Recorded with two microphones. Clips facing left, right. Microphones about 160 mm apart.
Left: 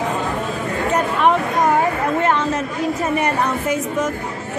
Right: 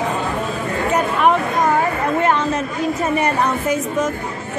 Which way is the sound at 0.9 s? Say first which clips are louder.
Right 1 dB; 5° right (ahead or behind).